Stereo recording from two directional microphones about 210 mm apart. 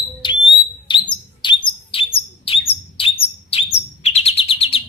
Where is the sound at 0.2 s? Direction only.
25° left (ahead or behind).